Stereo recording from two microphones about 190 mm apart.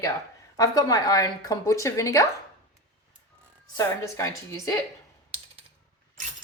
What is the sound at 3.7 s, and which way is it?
A woman's voice, 15° left (ahead or behind).